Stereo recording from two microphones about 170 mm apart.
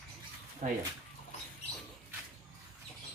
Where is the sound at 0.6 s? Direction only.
50° right (ahead or behind).